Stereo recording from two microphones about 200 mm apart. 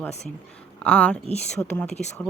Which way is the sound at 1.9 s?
35° left (ahead or behind).